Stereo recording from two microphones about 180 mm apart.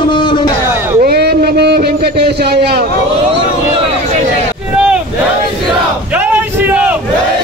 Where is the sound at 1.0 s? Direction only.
60° right (ahead or behind).